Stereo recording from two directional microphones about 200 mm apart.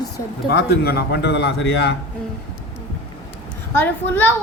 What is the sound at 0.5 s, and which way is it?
Speech, 50° left (ahead or behind).